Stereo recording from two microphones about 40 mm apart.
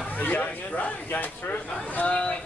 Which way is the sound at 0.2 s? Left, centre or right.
Left.